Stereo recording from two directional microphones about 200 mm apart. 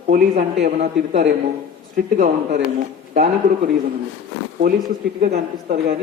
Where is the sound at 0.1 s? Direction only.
45° right (ahead or behind).